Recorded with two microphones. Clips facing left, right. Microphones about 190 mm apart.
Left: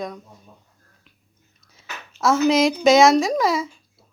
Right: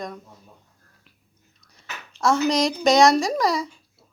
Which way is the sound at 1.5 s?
Centre (ahead or behind).